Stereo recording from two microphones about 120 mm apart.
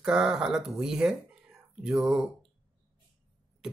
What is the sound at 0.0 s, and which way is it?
Speech, 5° right (ahead or behind).